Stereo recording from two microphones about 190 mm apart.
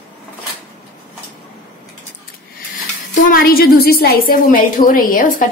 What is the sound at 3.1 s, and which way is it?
A woman's voice, 45° left (ahead or behind).